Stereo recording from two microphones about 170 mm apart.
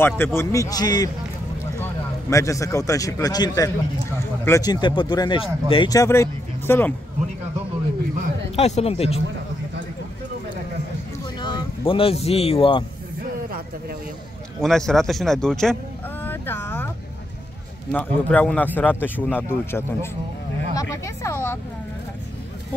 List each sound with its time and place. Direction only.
0.0 s a man's voice: 15° left (ahead or behind)
8.5 s speech: 40° left (ahead or behind)
11.4 s speech: 30° left (ahead or behind)
14.6 s a sound: centre (ahead or behind)
17.9 s speech: 10° left (ahead or behind)